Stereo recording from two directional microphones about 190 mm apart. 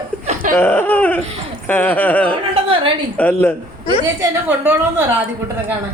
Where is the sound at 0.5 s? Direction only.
10° left (ahead or behind).